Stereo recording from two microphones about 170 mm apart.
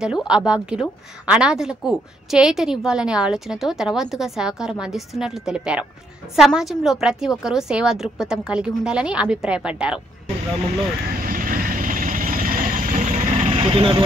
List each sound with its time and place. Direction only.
0.0 s a woman's voice: 5° right (ahead or behind)
11.1 s vehicle: 55° right (ahead or behind); by 13.9 s 35° right (ahead or behind)